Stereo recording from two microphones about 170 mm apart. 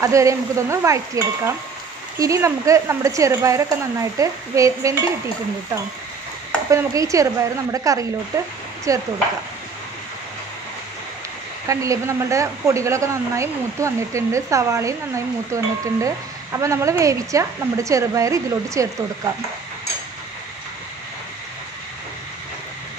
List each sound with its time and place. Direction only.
0.0 s speech: 20° right (ahead or behind)
6.7 s speech: 20° right (ahead or behind)
11.6 s speech: 20° right (ahead or behind)